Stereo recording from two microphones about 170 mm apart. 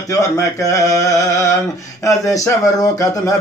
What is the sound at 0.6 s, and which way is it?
Speech, 20° left (ahead or behind).